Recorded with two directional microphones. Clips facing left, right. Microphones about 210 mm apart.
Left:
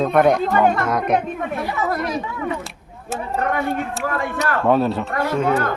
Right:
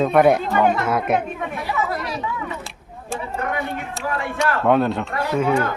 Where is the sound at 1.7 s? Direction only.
50° left (ahead or behind).